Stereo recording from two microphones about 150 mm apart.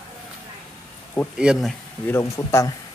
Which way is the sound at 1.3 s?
5° right (ahead or behind).